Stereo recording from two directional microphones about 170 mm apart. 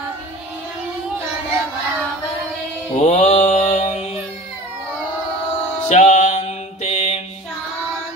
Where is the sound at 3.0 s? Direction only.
40° left (ahead or behind).